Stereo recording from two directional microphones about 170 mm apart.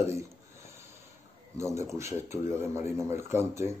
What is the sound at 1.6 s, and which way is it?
Speech, 15° right (ahead or behind).